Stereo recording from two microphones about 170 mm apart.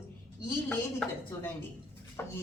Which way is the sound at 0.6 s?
5° left (ahead or behind).